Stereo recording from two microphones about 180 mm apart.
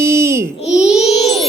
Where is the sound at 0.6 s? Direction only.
5° right (ahead or behind).